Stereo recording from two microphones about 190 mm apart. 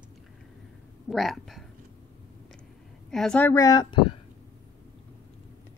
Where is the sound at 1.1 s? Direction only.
Centre (ahead or behind).